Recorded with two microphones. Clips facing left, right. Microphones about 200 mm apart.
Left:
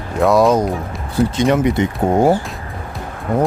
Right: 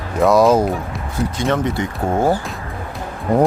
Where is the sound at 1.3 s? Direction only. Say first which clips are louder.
Left 3 dB; 15° left (ahead or behind).